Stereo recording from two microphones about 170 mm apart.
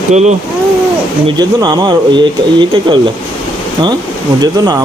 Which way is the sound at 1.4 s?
25° right (ahead or behind).